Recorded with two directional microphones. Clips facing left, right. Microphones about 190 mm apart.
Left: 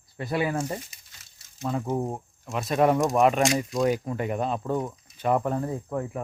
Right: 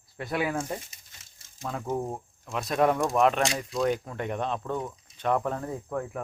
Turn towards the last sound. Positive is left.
turn(degrees=5)  # may be behind; listen again after turning